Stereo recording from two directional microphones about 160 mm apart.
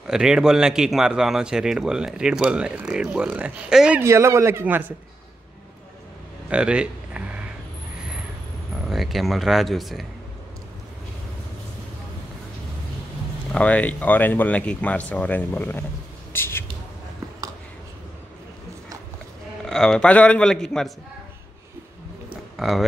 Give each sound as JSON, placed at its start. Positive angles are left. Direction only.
{"t": 0.0, "sound": "speech", "side_deg": -5}
{"t": 4.0, "sound": "speech", "side_deg": -20}
{"t": 6.5, "sound": "a sound", "side_deg": -5}
{"t": 8.8, "sound": "speech", "side_deg": 0}
{"t": 13.5, "sound": "speech", "side_deg": 10}
{"t": 19.6, "sound": "speech", "side_deg": 5}
{"t": 22.3, "sound": "a sound", "side_deg": 0}